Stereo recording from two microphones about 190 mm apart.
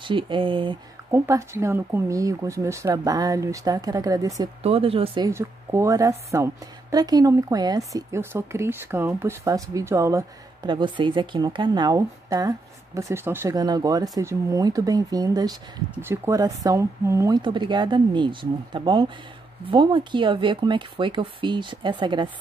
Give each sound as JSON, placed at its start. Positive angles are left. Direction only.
{"t": 0.0, "sound": "speech", "side_deg": -25}
{"t": 1.1, "sound": "speech", "side_deg": -15}
{"t": 4.6, "sound": "speech", "side_deg": -30}
{"t": 5.3, "sound": "speech", "side_deg": -15}